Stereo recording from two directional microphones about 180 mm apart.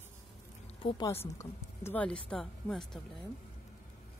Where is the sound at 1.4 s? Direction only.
15° left (ahead or behind).